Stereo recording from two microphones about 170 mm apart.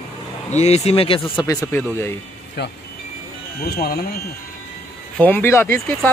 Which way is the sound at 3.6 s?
65° left (ahead or behind).